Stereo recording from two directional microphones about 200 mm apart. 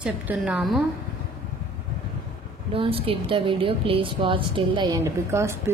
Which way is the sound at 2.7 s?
30° right (ahead or behind).